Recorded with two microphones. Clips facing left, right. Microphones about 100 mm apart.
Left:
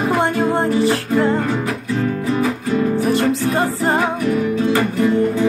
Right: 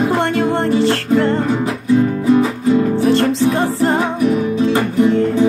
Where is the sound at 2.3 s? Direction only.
25° right (ahead or behind).